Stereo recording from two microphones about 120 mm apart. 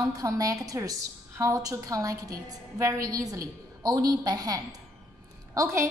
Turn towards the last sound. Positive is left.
turn(degrees=-25)  # may be behind; listen again after turning